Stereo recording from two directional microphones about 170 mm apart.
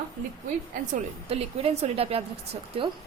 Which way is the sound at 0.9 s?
35° right (ahead or behind).